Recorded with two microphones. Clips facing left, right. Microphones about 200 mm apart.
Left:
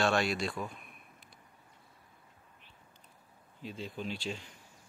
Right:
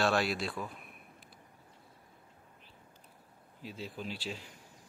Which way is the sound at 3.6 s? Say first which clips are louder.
Left 2 dB; 5° right (ahead or behind).